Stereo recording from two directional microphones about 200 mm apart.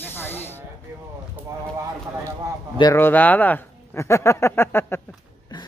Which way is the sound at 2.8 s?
10° left (ahead or behind).